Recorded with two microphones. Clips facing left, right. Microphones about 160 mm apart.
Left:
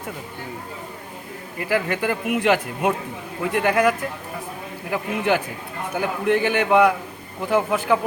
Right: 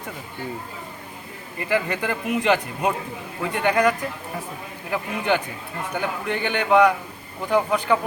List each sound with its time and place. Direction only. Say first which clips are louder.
1.5 s a man's voice: left 1 dB; 5° left (ahead or behind)